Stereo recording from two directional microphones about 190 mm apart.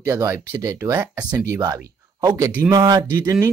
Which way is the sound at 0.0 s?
15° right (ahead or behind).